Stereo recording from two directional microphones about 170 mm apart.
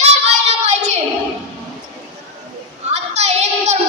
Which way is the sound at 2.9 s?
40° right (ahead or behind).